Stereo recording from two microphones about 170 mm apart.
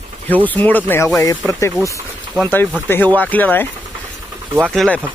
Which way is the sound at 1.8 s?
15° right (ahead or behind).